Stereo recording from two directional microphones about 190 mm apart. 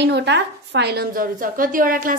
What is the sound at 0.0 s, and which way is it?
A woman's voice, 65° right (ahead or behind).